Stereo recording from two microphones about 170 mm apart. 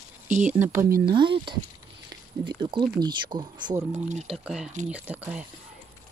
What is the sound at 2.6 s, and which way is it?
Speech, 25° right (ahead or behind).